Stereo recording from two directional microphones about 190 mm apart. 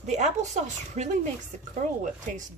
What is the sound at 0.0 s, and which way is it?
A woman's voice, 40° right (ahead or behind).